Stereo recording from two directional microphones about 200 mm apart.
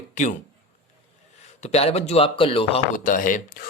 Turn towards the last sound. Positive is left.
turn(degrees=40)  # may be behind; listen again after turning